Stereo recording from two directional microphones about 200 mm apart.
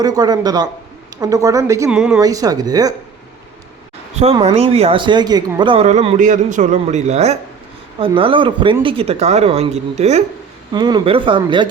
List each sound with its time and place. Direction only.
0.0 s speech: 20° right (ahead or behind)
1.9 s speech: 5° right (ahead or behind)
2.1 s speech: 15° right (ahead or behind)
4.1 s speech: 30° right (ahead or behind)
10.7 s speech: 20° right (ahead or behind)